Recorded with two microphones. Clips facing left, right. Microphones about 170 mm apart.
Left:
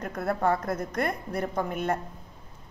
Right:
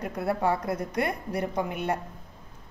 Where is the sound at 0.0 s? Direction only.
10° right (ahead or behind).